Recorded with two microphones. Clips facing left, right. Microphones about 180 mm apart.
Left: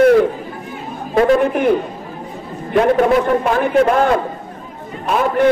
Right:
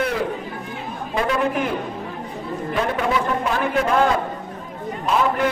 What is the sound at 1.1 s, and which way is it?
Speech, 40° left (ahead or behind).